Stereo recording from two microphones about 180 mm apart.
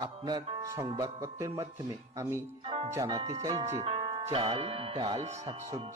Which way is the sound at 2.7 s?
30° right (ahead or behind).